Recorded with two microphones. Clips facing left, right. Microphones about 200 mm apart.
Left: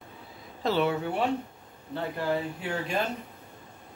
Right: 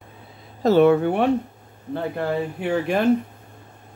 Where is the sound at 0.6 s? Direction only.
45° right (ahead or behind).